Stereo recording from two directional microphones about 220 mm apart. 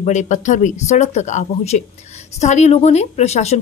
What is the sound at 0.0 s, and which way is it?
A woman's voice, 35° left (ahead or behind).